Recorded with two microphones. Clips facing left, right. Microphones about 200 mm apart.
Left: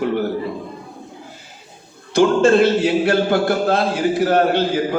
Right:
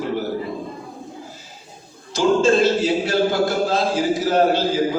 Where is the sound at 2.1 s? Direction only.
60° left (ahead or behind).